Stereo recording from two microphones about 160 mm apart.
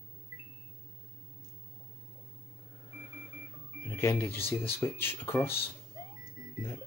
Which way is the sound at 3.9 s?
15° left (ahead or behind).